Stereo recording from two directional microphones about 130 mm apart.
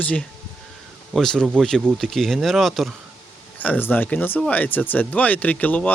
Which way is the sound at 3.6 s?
15° left (ahead or behind).